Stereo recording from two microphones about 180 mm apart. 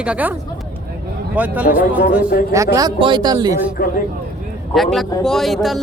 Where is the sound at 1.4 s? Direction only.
10° right (ahead or behind).